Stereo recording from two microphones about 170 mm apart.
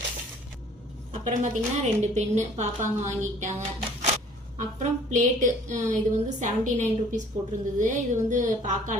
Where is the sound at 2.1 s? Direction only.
45° right (ahead or behind).